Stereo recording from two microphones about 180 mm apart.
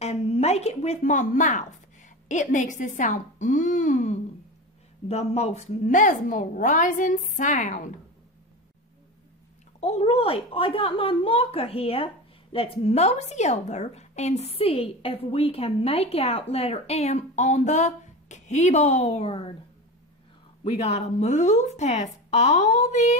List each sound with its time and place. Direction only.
0.0 s a woman's voice: 35° left (ahead or behind)
9.8 s a woman's voice: 35° left (ahead or behind)
20.6 s a woman's voice: 35° left (ahead or behind)